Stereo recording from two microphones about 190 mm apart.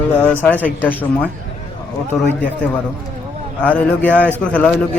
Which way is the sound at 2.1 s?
Centre (ahead or behind).